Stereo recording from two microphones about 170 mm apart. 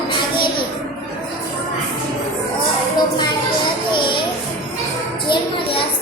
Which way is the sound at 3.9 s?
30° left (ahead or behind).